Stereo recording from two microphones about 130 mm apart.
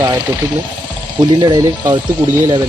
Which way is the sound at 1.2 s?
35° right (ahead or behind).